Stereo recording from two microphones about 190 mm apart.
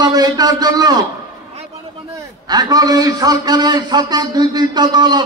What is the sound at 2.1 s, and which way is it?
A man's voice, 20° right (ahead or behind).